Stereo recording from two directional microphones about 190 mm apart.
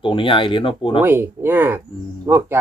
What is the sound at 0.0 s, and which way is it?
Speech, 25° left (ahead or behind).